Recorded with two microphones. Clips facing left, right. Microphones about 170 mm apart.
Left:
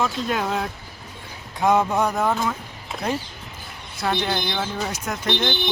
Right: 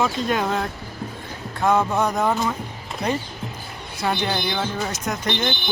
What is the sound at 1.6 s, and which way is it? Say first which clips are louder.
Speech: even; 15° left (ahead or behind).